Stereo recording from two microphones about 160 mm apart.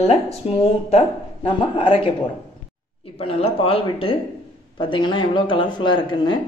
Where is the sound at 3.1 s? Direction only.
35° left (ahead or behind).